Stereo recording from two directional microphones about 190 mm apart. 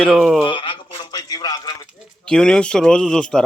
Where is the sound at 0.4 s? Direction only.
25° left (ahead or behind).